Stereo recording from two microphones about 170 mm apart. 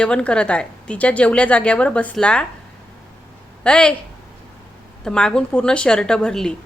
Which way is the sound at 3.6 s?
5° left (ahead or behind).